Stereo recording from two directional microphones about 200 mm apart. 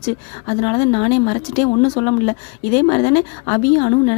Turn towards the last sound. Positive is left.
turn(degrees=30)  # may be behind; listen again after turning